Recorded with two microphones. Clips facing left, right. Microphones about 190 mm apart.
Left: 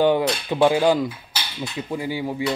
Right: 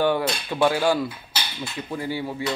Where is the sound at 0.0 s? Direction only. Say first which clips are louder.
Left 4 dB; 15° left (ahead or behind).